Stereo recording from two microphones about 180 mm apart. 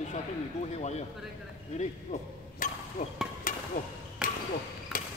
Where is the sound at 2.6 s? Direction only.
45° left (ahead or behind).